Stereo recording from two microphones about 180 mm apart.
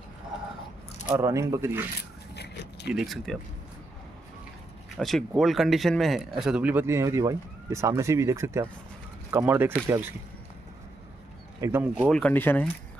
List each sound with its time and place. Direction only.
1.0 s speech: 15° right (ahead or behind)
2.3 s a sound: 70° left (ahead or behind)
2.9 s speech: centre (ahead or behind)
4.9 s speech: centre (ahead or behind)
11.6 s speech: 10° right (ahead or behind)
12.1 s speech: 10° left (ahead or behind)